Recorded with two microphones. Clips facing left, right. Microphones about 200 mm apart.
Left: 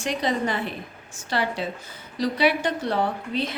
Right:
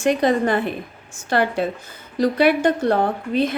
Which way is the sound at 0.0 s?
55° right (ahead or behind).